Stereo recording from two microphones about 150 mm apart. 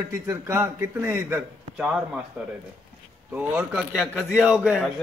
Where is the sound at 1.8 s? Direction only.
5° right (ahead or behind).